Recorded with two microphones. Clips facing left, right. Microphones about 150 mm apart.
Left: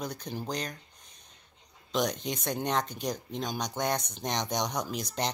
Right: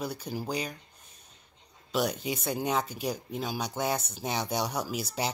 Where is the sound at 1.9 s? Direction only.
5° right (ahead or behind).